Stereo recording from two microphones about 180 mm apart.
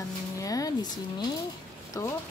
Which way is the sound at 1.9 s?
20° left (ahead or behind).